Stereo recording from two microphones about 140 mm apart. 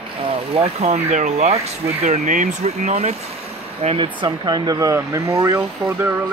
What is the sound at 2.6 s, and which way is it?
Speech, 50° right (ahead or behind).